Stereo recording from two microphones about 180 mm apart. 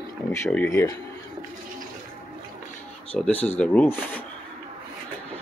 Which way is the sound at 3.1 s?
Centre (ahead or behind).